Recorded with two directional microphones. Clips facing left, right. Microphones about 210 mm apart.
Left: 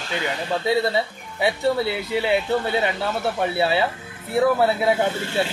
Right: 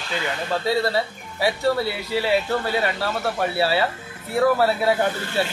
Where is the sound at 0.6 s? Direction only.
20° left (ahead or behind).